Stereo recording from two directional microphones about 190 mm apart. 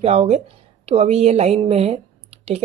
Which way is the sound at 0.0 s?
35° right (ahead or behind).